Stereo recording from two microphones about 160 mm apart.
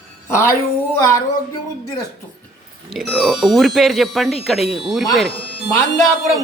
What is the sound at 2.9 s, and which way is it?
Speech, centre (ahead or behind).